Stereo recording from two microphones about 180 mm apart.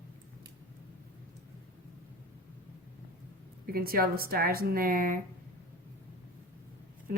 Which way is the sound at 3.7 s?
55° right (ahead or behind).